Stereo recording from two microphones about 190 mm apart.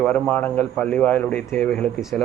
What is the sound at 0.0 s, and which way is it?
A man's voice, 10° left (ahead or behind).